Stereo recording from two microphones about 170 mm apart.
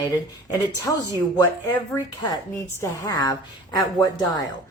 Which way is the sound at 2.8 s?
20° left (ahead or behind).